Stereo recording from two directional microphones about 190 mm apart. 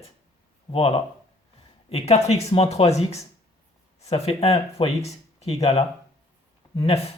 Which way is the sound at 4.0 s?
30° left (ahead or behind).